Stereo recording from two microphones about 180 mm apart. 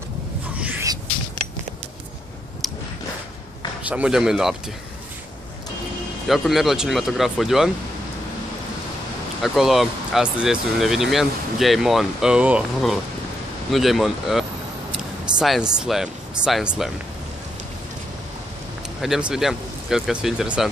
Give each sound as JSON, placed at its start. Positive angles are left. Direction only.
{"t": 0.6, "sound": "a sound", "side_deg": -10}
{"t": 2.6, "sound": "a sound", "side_deg": 0}
{"t": 3.9, "sound": "speech", "side_deg": -5}
{"t": 6.2, "sound": "speech", "side_deg": 0}
{"t": 9.4, "sound": "speech", "side_deg": 0}
{"t": 18.9, "sound": "speech", "side_deg": -5}